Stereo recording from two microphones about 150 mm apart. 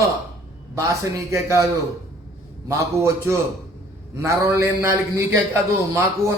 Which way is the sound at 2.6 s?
15° right (ahead or behind).